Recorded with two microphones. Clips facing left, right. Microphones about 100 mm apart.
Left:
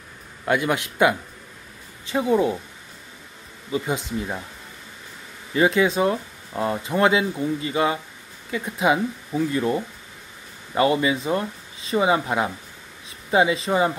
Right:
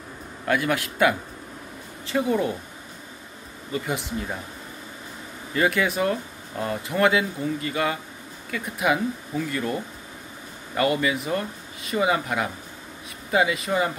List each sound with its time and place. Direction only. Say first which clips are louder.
0.5 s speech: left 2 dB; 20° left (ahead or behind)
3.7 s speech: left 3 dB; 20° left (ahead or behind)
5.5 s speech: left 4 dB; 20° left (ahead or behind)